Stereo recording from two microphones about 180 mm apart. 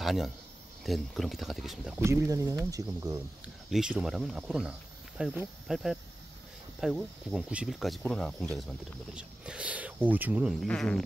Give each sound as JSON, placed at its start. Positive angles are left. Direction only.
{"t": 0.0, "sound": "speech", "side_deg": 0}
{"t": 2.0, "sound": "speech", "side_deg": -15}
{"t": 3.7, "sound": "speech", "side_deg": -5}